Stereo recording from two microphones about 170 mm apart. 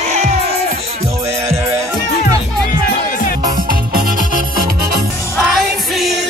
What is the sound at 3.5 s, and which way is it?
Music, 55° right (ahead or behind).